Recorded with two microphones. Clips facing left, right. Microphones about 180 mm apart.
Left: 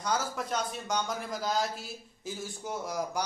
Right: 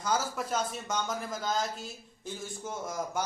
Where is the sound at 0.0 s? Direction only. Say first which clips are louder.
Right 1 dB; 5° right (ahead or behind).